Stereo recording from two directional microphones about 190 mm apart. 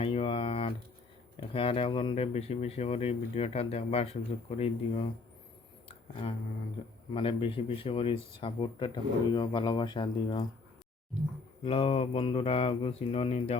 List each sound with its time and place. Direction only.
0.0 s a sound: 30° left (ahead or behind)
1.4 s speech: 30° left (ahead or behind)
7.1 s speech: 30° left (ahead or behind)
11.6 s speech: 30° left (ahead or behind)